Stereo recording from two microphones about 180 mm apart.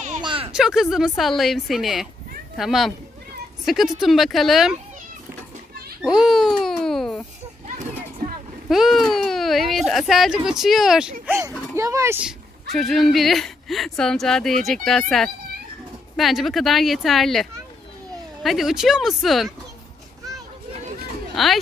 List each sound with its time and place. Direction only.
0.2 s a sound: 30° right (ahead or behind)
0.5 s speech: 5° right (ahead or behind)
6.0 s babbling: 5° right (ahead or behind)
8.6 s a child's voice: centre (ahead or behind)
11.2 s a child's voice: 15° right (ahead or behind)
21.4 s speech: centre (ahead or behind)